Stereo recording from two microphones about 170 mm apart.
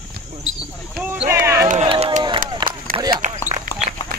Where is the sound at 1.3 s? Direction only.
15° right (ahead or behind).